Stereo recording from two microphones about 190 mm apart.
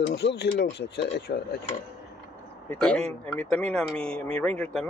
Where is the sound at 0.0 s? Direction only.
60° left (ahead or behind).